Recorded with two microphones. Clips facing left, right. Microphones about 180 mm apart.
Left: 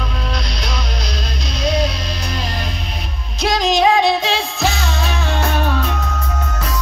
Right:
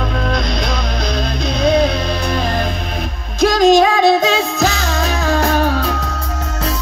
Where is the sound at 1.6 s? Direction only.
55° right (ahead or behind).